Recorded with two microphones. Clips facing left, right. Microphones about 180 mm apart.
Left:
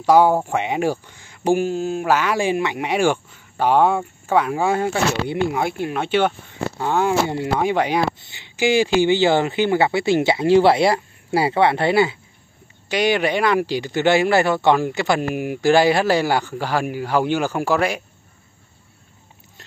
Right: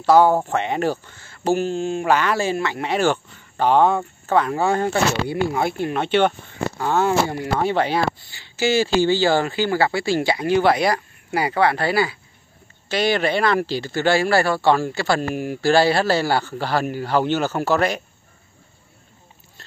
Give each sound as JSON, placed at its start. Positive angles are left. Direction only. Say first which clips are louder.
{"t": 0.0, "sound": "speech", "louder": "even", "side_deg": 10}